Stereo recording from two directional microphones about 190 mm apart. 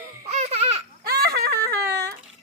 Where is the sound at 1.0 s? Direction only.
55° right (ahead or behind).